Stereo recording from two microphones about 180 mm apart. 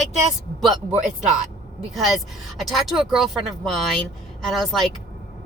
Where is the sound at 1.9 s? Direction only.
Centre (ahead or behind).